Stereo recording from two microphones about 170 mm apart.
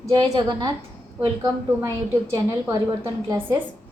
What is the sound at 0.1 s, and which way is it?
Speech, 25° right (ahead or behind).